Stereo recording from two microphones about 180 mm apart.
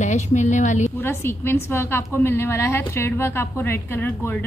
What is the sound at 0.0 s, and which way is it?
Speech, 40° left (ahead or behind).